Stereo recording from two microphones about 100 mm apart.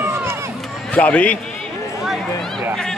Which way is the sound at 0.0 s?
25° right (ahead or behind).